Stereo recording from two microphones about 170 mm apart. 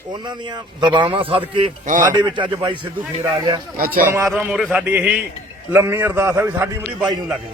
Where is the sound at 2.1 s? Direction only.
25° right (ahead or behind).